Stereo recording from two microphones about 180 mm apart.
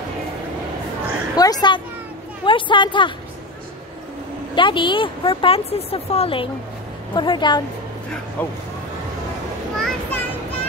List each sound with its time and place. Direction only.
1.3 s a sound: 20° left (ahead or behind)
4.6 s speech: 25° left (ahead or behind)
8.4 s speech: 10° left (ahead or behind)
9.8 s a child's voice: 5° left (ahead or behind)